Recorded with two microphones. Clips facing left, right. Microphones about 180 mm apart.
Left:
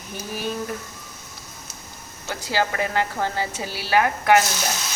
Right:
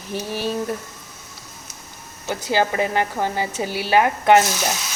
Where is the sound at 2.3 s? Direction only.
20° right (ahead or behind).